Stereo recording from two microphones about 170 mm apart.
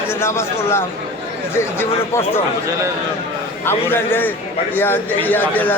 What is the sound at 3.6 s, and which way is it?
A man's voice, 10° left (ahead or behind).